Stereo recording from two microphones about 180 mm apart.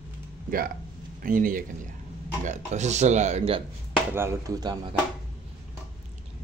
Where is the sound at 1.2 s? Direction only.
50° right (ahead or behind); by 3.6 s 35° right (ahead or behind).